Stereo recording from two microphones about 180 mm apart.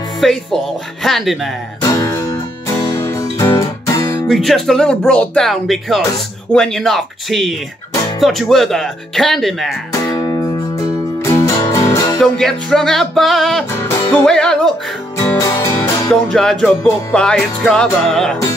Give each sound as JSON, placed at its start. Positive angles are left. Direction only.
{"t": 0.2, "sound": "speech", "side_deg": 0}
{"t": 1.8, "sound": "music", "side_deg": 15}
{"t": 4.3, "sound": "speech", "side_deg": 0}
{"t": 10.1, "sound": "music", "side_deg": 20}
{"t": 12.2, "sound": "speech", "side_deg": 5}
{"t": 15.1, "sound": "music", "side_deg": 15}
{"t": 16.3, "sound": "speech", "side_deg": 5}